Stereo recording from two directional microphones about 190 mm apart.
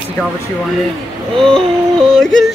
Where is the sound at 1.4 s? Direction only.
5° left (ahead or behind).